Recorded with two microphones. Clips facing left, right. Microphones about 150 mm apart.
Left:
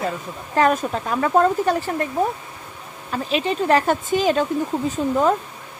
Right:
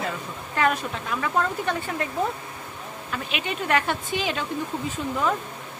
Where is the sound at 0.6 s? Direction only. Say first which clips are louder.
Left 6 dB; 40° left (ahead or behind).